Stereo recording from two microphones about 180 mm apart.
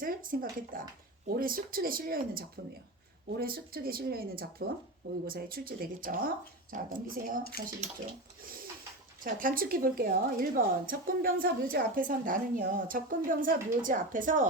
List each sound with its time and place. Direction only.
0.0 s a woman's voice: 50° right (ahead or behind)
9.2 s a woman's voice: 50° right (ahead or behind)